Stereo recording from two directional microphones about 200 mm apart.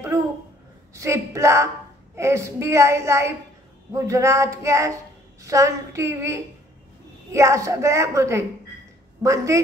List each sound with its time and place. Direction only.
0.9 s a woman's voice: 15° right (ahead or behind)